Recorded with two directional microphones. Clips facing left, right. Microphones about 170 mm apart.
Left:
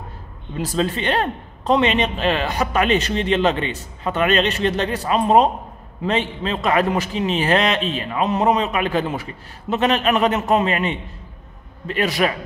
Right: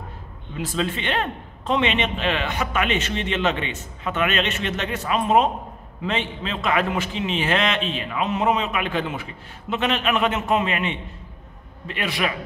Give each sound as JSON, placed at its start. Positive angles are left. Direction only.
{"t": 0.6, "sound": "a man's voice", "side_deg": 40}